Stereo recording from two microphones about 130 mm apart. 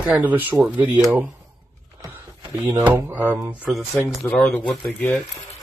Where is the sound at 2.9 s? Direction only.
15° right (ahead or behind).